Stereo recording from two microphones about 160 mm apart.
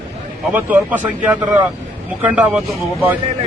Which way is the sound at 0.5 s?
10° right (ahead or behind).